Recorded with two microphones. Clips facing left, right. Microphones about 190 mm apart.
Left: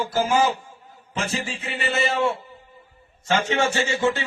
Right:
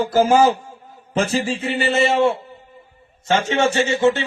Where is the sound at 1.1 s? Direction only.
35° right (ahead or behind).